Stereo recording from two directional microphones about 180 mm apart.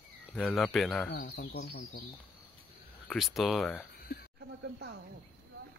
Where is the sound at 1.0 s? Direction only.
50° left (ahead or behind).